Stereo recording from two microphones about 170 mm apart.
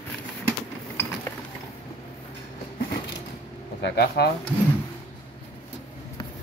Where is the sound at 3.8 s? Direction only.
75° left (ahead or behind).